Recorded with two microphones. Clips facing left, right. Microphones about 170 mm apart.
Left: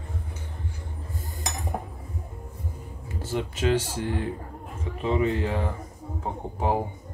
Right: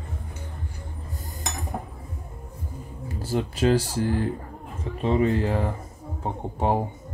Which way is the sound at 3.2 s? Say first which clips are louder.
Right 3 dB; 35° right (ahead or behind).